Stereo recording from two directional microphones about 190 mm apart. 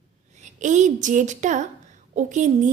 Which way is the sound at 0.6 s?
40° right (ahead or behind).